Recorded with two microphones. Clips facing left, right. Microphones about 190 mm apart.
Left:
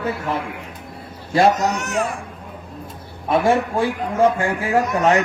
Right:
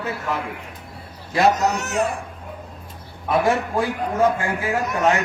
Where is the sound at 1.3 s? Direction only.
30° left (ahead or behind).